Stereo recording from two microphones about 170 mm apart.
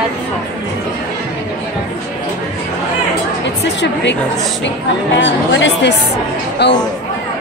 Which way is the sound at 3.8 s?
90° left.